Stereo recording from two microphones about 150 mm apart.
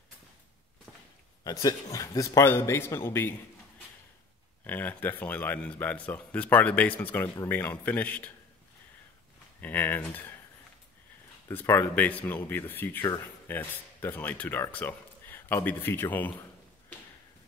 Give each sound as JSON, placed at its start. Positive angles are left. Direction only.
{"t": 1.4, "sound": "speech", "side_deg": 25}
{"t": 4.6, "sound": "speech", "side_deg": 10}
{"t": 9.6, "sound": "speech", "side_deg": 10}
{"t": 11.4, "sound": "speech", "side_deg": 15}